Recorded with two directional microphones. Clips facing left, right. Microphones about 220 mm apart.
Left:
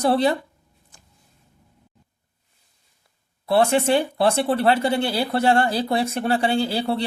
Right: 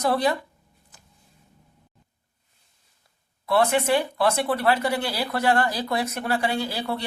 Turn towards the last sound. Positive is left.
turn(degrees=30)  # may be behind; listen again after turning